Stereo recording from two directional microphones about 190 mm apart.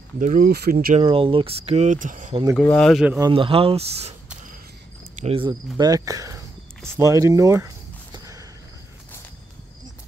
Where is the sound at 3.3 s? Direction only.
30° right (ahead or behind).